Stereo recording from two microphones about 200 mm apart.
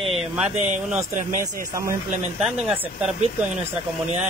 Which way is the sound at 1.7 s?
15° right (ahead or behind).